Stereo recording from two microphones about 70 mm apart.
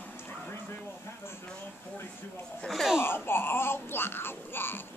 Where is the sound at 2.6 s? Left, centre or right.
Centre.